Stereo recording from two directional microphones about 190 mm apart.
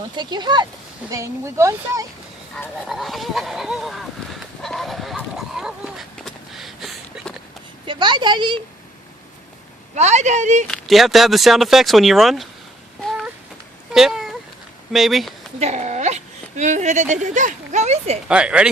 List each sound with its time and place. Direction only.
0.2 s a woman's voice: 25° right (ahead or behind)
2.8 s a sound: centre (ahead or behind)
7.9 s a woman's voice: 25° right (ahead or behind)
9.9 s speech: 35° right (ahead or behind)
10.7 s speech: centre (ahead or behind)
13.1 s a sound: centre (ahead or behind)
14.9 s speech: centre (ahead or behind)
15.5 s a woman's voice: 35° right (ahead or behind)
18.3 s speech: 5° right (ahead or behind)